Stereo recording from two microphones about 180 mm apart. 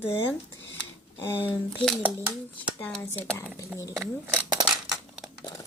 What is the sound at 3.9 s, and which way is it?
Speech, 15° right (ahead or behind).